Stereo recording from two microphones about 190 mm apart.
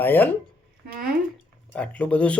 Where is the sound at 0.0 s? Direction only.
10° left (ahead or behind).